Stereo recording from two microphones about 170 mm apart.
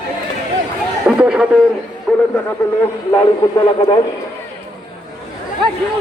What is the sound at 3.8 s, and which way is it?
Speech, 30° left (ahead or behind).